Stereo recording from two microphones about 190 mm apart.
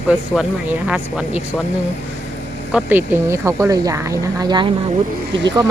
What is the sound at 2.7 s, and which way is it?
Speech, 5° right (ahead or behind).